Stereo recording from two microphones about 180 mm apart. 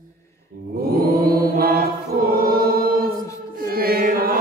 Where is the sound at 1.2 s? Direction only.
55° right (ahead or behind).